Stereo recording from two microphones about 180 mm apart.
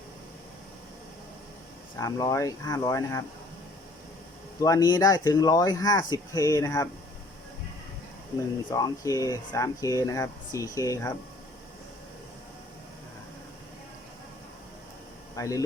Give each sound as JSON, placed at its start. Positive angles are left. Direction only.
{"t": 2.0, "sound": "speech", "side_deg": 20}
{"t": 4.6, "sound": "speech", "side_deg": 20}
{"t": 8.7, "sound": "speech", "side_deg": 20}
{"t": 15.4, "sound": "speech", "side_deg": 20}